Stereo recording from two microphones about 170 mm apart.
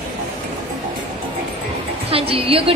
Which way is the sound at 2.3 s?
35° right (ahead or behind).